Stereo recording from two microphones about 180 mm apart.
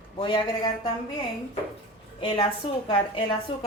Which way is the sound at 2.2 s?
25° left (ahead or behind).